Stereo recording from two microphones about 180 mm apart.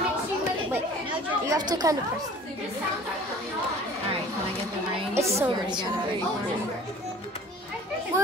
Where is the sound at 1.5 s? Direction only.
20° right (ahead or behind).